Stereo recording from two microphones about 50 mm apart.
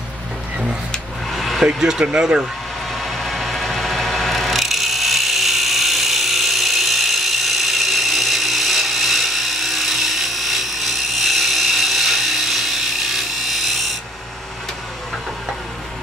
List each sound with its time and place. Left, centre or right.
1.3 s vehicle: centre
1.7 s speech: centre
3.0 s wood: centre